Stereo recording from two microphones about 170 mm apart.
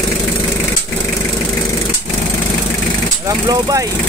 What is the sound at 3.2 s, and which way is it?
Speech, 20° right (ahead or behind).